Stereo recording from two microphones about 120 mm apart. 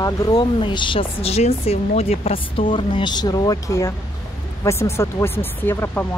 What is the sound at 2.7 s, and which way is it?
Speech, 40° left (ahead or behind).